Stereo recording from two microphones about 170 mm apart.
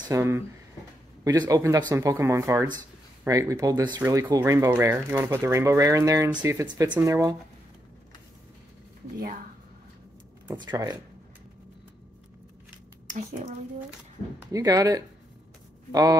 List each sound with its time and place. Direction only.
0.0 s speech: 15° right (ahead or behind)
10.6 s speech: 25° right (ahead or behind)
13.0 s speech: 45° right (ahead or behind)
14.5 s speech: 20° right (ahead or behind)